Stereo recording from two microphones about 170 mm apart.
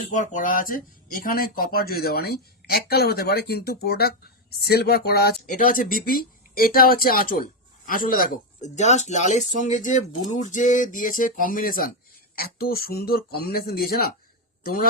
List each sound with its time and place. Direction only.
0.1 s speech: 50° left (ahead or behind); by 5.3 s 65° left (ahead or behind)
5.5 s a man's voice: 50° left (ahead or behind)